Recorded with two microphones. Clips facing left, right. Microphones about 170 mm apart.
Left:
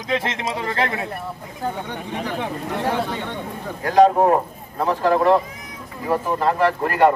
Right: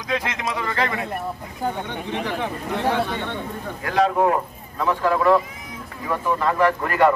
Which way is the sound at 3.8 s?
35° left (ahead or behind).